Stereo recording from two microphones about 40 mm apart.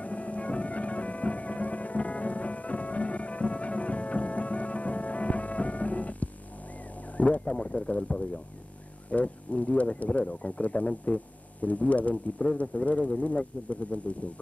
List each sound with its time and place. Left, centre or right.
0.0 s music: left
7.2 s a sound: left
7.5 s speech: centre; by 14.1 s left